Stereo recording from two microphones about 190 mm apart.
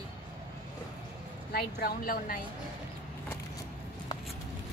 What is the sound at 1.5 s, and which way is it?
Speech, 55° left (ahead or behind).